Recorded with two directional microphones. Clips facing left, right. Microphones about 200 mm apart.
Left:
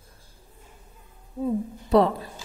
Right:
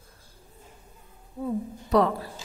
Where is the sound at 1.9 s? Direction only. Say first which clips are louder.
Left 3 dB; 25° left (ahead or behind).